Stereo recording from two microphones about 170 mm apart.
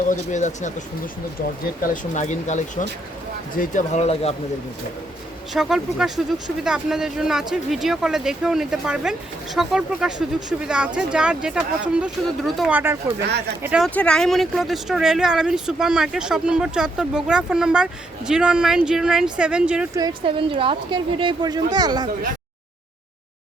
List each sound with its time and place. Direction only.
0.1 s speech: 45° left (ahead or behind)
5.5 s speech: centre (ahead or behind)
13.8 s speech: 5° left (ahead or behind)
19.9 s a woman's voice: 25° right (ahead or behind)